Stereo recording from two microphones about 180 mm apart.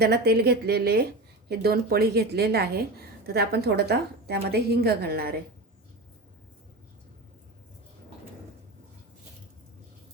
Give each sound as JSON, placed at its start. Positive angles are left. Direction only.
{"t": 0.0, "sound": "a woman's voice", "side_deg": -60}